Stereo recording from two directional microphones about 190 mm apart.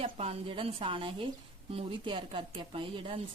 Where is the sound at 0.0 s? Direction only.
30° right (ahead or behind).